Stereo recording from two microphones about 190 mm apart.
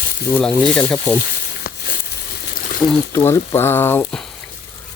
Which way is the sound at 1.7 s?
55° left (ahead or behind).